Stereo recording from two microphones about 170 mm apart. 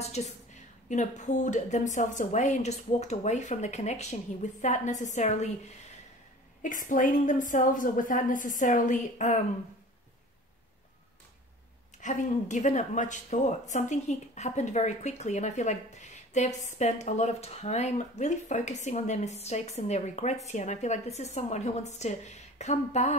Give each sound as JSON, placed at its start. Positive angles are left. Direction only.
{"t": 0.0, "sound": "a woman's voice", "side_deg": 40}
{"t": 6.6, "sound": "speech", "side_deg": 50}
{"t": 12.0, "sound": "a woman's voice", "side_deg": 45}